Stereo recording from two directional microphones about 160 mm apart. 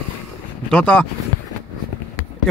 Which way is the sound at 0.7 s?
10° left (ahead or behind).